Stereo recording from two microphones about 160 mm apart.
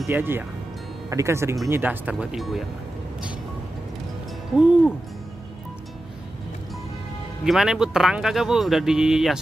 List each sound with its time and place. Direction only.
0.0 s speech: 15° right (ahead or behind)
4.6 s speech: 5° right (ahead or behind)
7.4 s speech: centre (ahead or behind)